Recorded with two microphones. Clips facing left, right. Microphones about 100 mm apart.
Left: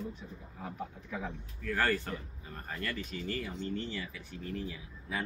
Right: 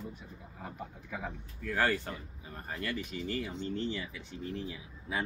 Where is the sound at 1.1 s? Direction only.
5° right (ahead or behind).